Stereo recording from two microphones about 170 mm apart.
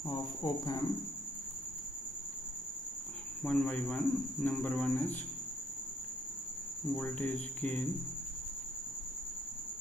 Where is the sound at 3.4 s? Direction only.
10° left (ahead or behind).